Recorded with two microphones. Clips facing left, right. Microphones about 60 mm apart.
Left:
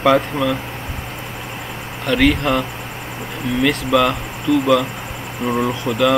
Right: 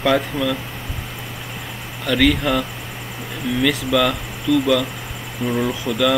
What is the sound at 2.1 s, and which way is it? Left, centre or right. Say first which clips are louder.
Speech: left 1 dB; left.